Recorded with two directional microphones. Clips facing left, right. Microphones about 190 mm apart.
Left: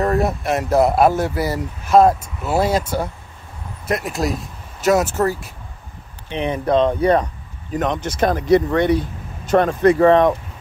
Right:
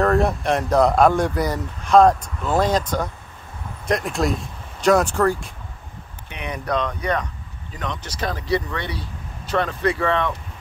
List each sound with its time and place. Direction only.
0.0 s speech: 5° left (ahead or behind)
6.3 s speech: 30° left (ahead or behind)
7.7 s speech: 50° left (ahead or behind)